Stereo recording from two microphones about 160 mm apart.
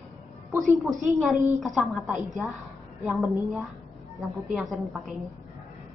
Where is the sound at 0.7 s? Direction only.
20° right (ahead or behind).